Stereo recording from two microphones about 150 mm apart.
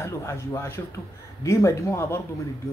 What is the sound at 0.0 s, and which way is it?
A man's voice, 20° left (ahead or behind).